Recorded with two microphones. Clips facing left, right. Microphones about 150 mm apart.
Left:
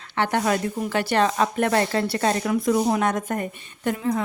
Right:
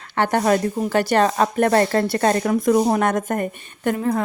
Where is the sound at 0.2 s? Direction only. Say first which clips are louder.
Right 4 dB; 45° right (ahead or behind).